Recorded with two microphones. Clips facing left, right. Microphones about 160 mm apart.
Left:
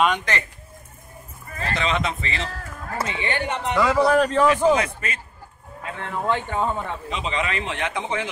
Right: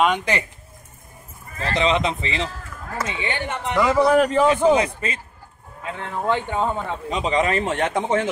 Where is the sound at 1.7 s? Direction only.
25° right (ahead or behind).